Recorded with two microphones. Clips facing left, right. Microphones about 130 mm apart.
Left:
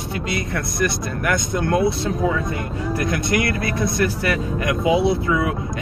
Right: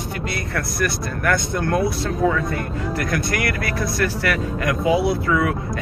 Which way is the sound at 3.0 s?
20° left (ahead or behind).